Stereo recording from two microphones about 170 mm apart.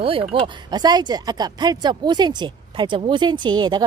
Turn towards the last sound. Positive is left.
turn(degrees=-25)  # may be behind; listen again after turning